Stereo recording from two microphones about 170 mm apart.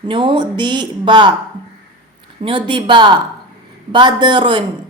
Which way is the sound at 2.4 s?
30° right (ahead or behind).